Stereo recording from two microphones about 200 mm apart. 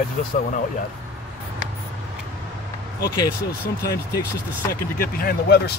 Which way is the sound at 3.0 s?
15° left (ahead or behind).